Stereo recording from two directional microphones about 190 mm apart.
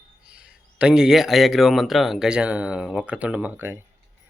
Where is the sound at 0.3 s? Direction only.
5° right (ahead or behind).